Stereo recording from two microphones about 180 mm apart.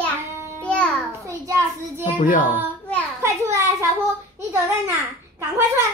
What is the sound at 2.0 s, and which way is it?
Speech, 45° left (ahead or behind).